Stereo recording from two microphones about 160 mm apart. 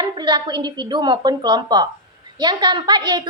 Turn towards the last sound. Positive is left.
turn(degrees=-25)  # may be behind; listen again after turning